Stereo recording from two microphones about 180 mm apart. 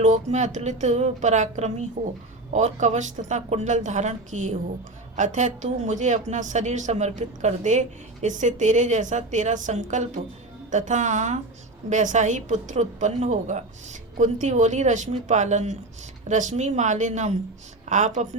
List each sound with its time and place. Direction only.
0.0 s a woman's voice: 40° right (ahead or behind)